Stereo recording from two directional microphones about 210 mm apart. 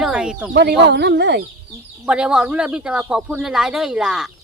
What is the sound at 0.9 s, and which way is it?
Speech, 55° right (ahead or behind).